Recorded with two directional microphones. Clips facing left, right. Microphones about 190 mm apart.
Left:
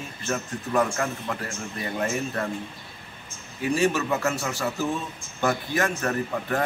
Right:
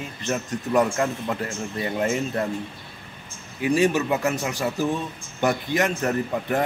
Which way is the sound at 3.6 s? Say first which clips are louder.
Right 3 dB; 15° right (ahead or behind).